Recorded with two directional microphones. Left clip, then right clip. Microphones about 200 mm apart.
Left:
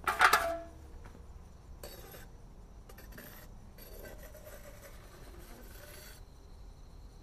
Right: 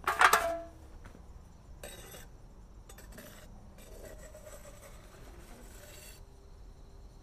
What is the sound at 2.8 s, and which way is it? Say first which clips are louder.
Cutlery: even; 5° left (ahead or behind).